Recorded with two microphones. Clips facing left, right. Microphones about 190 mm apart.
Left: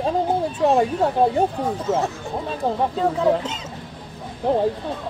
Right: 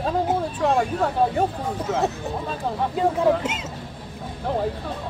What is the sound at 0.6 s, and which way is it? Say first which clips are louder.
Speech: left 4 dB; 20° left (ahead or behind).